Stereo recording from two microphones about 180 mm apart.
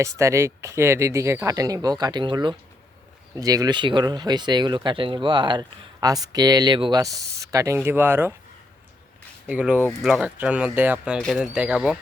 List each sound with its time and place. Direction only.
0.0 s speech: 15° right (ahead or behind)
9.5 s speech: 10° right (ahead or behind)